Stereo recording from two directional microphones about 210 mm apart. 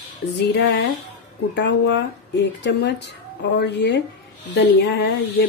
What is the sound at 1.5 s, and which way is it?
Speech, 55° left (ahead or behind).